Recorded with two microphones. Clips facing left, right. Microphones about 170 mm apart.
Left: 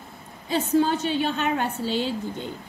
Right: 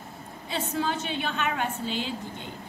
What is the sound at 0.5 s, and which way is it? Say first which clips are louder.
A woman's voice: left 8 dB; 35° left (ahead or behind).